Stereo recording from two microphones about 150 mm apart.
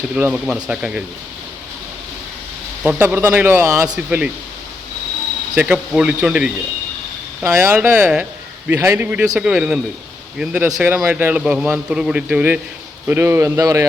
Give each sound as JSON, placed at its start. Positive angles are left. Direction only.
{"t": 0.2, "sound": "a man's voice", "side_deg": -10}
{"t": 2.8, "sound": "a man's voice", "side_deg": -10}
{"t": 3.9, "sound": "a man's voice", "side_deg": -10}
{"t": 5.5, "sound": "a man's voice", "side_deg": -10}